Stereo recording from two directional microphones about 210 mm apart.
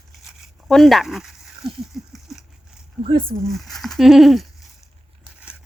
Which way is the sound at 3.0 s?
25° right (ahead or behind).